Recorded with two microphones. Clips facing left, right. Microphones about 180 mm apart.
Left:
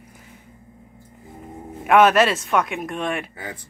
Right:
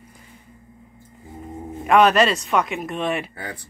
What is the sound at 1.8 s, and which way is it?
A woman's voice, centre (ahead or behind).